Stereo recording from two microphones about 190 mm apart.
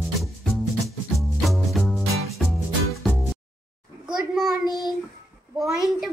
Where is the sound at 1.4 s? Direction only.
Centre (ahead or behind).